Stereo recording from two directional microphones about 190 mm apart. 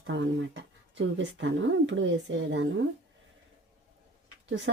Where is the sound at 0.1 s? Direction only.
75° right (ahead or behind).